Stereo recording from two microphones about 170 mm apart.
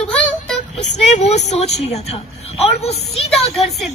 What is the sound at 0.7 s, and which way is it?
A woman's voice, 45° left (ahead or behind).